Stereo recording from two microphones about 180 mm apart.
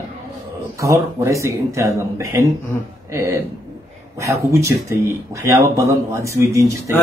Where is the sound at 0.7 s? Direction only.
15° right (ahead or behind).